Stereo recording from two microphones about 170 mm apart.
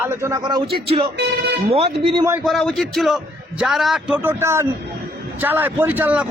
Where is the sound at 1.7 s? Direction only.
35° right (ahead or behind).